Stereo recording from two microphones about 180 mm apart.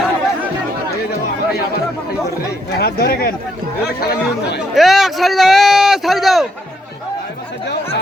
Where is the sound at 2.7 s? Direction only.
55° left (ahead or behind).